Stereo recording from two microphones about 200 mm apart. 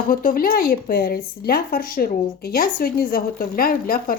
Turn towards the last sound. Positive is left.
turn(degrees=45)  # may be behind; listen again after turning